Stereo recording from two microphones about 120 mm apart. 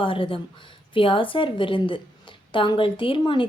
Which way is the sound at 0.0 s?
45° left (ahead or behind).